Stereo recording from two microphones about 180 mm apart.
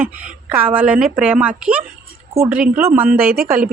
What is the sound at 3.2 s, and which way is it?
Speech, 55° right (ahead or behind).